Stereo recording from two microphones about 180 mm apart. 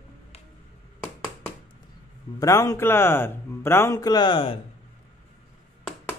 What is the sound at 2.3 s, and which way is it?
Speech, 20° left (ahead or behind).